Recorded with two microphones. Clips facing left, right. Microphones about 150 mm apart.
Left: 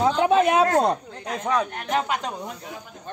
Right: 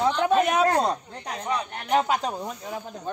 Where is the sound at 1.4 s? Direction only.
90° left.